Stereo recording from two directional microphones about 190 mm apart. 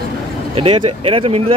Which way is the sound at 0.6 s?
30° right (ahead or behind).